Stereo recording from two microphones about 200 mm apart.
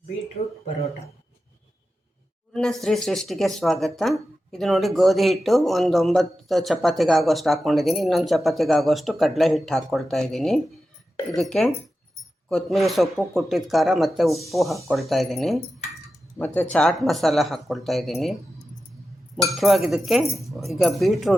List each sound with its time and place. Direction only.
0.4 s speech: 30° left (ahead or behind)
2.5 s speech: centre (ahead or behind)
16.7 s speech: centre (ahead or behind)
19.4 s speech: centre (ahead or behind)